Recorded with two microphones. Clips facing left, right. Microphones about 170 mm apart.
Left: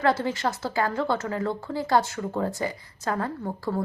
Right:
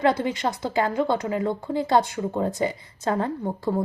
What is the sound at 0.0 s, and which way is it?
A woman's voice, 15° right (ahead or behind).